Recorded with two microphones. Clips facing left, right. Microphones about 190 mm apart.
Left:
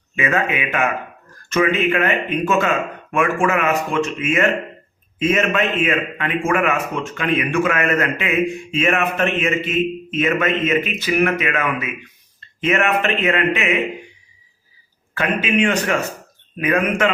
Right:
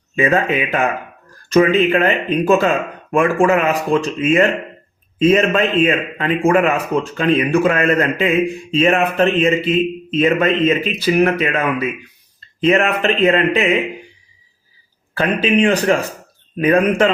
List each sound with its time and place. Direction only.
0.2 s speech: 35° right (ahead or behind)
15.1 s speech: 35° right (ahead or behind)